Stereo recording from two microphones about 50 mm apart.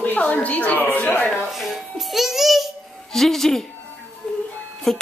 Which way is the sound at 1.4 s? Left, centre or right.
Centre.